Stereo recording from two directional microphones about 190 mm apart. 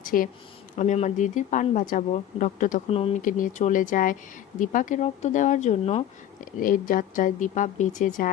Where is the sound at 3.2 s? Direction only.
45° left (ahead or behind).